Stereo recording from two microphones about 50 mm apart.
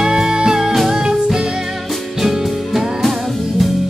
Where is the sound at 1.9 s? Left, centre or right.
Centre.